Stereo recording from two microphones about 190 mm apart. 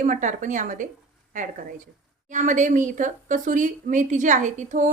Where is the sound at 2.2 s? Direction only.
40° right (ahead or behind).